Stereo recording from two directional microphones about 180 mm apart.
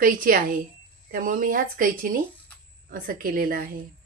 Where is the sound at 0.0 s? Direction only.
50° right (ahead or behind).